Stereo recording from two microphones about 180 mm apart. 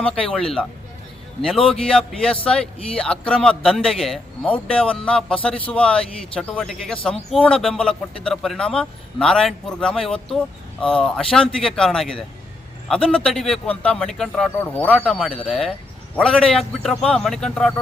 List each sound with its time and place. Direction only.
0.3 s speech: 5° left (ahead or behind)